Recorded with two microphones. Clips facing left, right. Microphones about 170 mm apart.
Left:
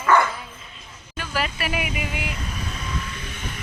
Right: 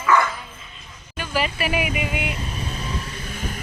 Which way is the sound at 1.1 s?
Centre (ahead or behind).